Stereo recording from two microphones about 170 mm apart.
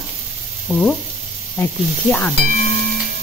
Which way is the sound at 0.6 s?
5° left (ahead or behind).